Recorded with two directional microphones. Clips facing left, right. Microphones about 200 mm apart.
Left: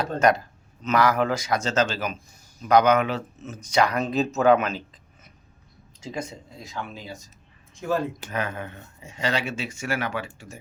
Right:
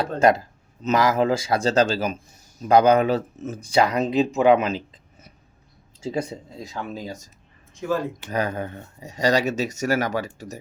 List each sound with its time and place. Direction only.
0.0 s speech: 25° right (ahead or behind)
6.1 s speech: 35° right (ahead or behind)
8.3 s speech: 35° right (ahead or behind)